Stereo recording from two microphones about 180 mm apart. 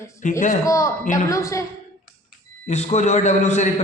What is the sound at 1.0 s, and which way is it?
Speech, 45° left (ahead or behind).